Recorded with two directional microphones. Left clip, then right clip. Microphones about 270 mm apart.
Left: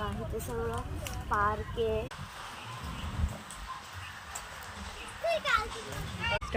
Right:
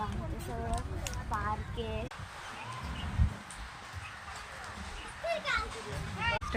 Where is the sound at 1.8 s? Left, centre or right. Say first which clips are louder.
Left 8 dB; centre.